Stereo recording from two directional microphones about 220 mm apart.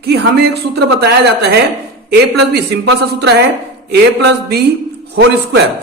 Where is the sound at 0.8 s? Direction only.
45° right (ahead or behind).